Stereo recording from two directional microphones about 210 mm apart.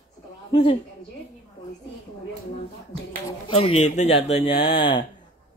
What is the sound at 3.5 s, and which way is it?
Speech, 30° left (ahead or behind).